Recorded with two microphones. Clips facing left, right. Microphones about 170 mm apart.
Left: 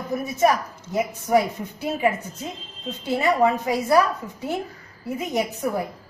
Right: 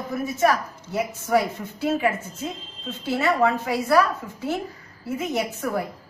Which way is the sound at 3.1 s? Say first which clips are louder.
Left 1 dB; 15° left (ahead or behind).